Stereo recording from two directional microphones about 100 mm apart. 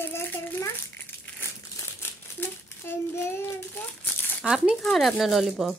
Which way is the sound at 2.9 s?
25° left (ahead or behind).